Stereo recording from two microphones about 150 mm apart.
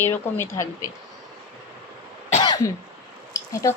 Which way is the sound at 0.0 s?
15° left (ahead or behind).